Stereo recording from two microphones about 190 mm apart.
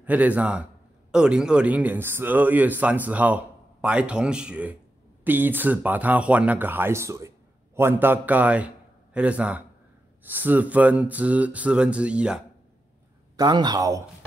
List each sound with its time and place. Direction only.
0.0 s speech: 10° right (ahead or behind)
13.4 s speech: 20° right (ahead or behind)